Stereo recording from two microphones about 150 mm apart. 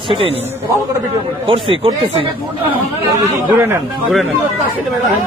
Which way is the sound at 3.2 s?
15° right (ahead or behind).